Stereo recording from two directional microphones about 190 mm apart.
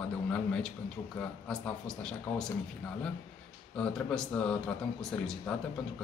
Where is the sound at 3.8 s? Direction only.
5° left (ahead or behind).